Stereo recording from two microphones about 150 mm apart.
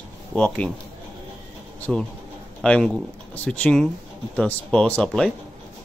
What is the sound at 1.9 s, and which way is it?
Speech, centre (ahead or behind).